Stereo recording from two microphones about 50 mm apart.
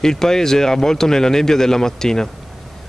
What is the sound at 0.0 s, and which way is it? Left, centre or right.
Speech, centre.